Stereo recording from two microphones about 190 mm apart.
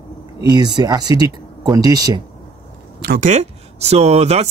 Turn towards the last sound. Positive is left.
turn(degrees=-35)  # may be behind; listen again after turning